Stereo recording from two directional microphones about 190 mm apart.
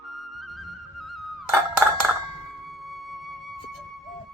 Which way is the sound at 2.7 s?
Centre (ahead or behind).